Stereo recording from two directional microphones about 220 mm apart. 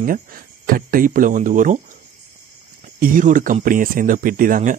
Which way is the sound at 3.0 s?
35° right (ahead or behind).